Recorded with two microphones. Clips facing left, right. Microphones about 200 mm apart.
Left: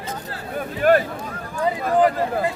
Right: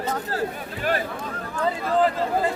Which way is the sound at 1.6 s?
15° left (ahead or behind).